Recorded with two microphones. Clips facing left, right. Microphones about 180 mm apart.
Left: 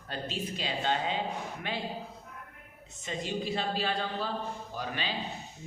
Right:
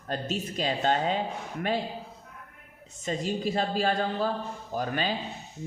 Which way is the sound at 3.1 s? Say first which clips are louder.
Right 4 dB; 45° right (ahead or behind).